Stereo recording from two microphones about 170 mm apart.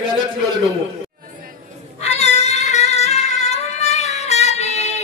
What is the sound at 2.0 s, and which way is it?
Music, 40° left (ahead or behind).